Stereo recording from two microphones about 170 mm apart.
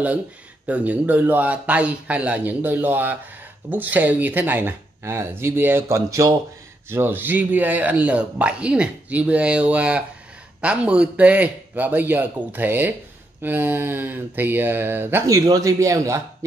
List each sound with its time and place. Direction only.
0.7 s speech: 10° right (ahead or behind)